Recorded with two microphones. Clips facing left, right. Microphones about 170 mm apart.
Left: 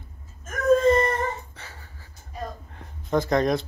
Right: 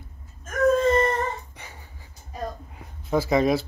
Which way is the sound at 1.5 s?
15° right (ahead or behind).